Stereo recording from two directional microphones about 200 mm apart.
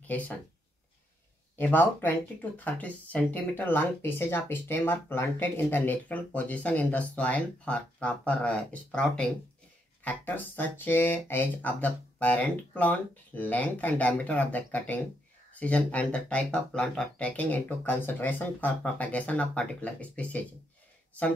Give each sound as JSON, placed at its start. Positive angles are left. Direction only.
{"t": 0.0, "sound": "speech", "side_deg": 10}
{"t": 1.6, "sound": "speech", "side_deg": 10}